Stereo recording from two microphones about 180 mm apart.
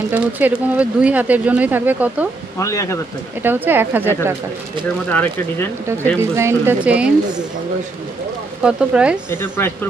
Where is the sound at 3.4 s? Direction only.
10° right (ahead or behind).